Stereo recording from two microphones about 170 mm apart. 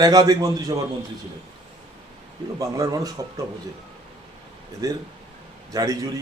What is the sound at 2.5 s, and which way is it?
Speech, 20° right (ahead or behind).